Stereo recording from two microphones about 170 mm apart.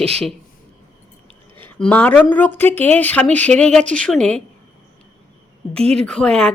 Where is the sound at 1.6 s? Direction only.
10° left (ahead or behind).